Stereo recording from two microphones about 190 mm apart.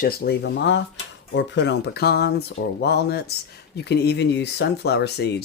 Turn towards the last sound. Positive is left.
turn(degrees=60)  # may be behind; listen again after turning